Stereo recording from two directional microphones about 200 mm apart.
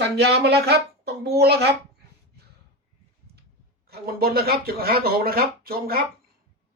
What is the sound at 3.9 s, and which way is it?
Speech, 50° right (ahead or behind).